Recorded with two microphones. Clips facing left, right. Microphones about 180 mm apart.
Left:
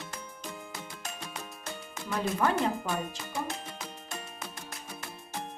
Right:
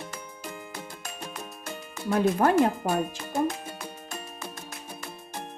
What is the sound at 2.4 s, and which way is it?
Speech, 50° right (ahead or behind).